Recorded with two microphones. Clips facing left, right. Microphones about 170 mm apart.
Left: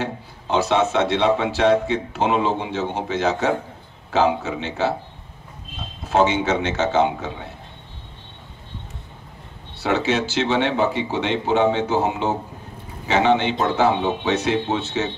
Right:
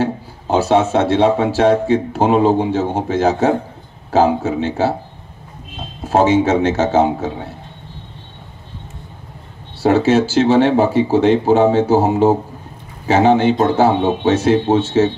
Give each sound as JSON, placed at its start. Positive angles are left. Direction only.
{"t": 0.0, "sound": "a man's voice", "side_deg": -40}
{"t": 6.0, "sound": "a man's voice", "side_deg": -50}
{"t": 9.8, "sound": "a man's voice", "side_deg": -45}